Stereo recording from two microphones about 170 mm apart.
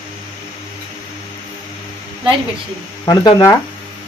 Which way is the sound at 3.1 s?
20° left (ahead or behind).